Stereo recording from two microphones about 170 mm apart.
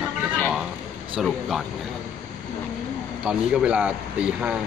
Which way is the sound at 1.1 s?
Centre (ahead or behind).